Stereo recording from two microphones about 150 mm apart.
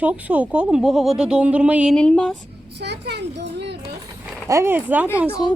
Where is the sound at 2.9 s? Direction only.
90° right.